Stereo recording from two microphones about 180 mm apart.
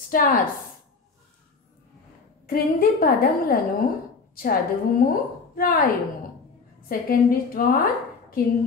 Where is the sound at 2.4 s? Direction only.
55° left (ahead or behind).